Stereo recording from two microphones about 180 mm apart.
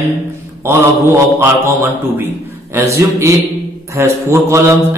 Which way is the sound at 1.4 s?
10° right (ahead or behind).